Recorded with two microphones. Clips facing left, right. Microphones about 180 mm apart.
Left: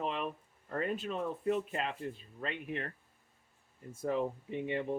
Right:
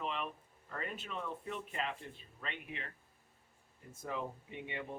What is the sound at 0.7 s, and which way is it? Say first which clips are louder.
Speech: left 8 dB; 40° left (ahead or behind).